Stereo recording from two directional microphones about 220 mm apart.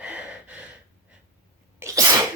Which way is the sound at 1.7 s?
15° right (ahead or behind).